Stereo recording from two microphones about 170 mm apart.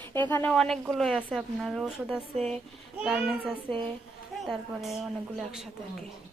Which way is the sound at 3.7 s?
30° right (ahead or behind).